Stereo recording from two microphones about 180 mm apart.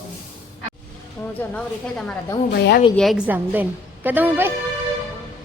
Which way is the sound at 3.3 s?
10° right (ahead or behind).